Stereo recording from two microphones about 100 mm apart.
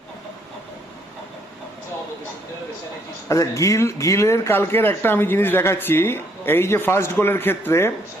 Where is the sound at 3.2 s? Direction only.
35° left (ahead or behind).